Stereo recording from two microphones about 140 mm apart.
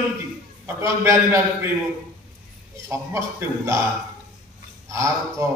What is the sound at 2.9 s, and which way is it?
Speech, 20° right (ahead or behind).